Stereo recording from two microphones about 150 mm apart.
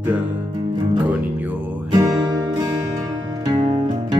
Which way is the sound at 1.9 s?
30° right (ahead or behind).